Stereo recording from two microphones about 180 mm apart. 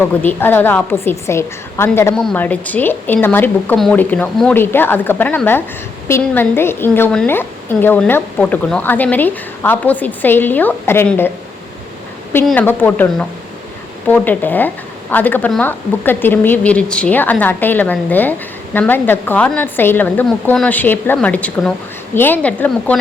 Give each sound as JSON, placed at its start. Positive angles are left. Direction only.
{"t": 0.0, "sound": "speech", "side_deg": 10}
{"t": 12.5, "sound": "speech", "side_deg": 10}